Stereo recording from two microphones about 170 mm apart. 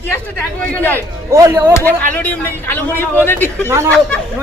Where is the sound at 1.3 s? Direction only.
15° right (ahead or behind).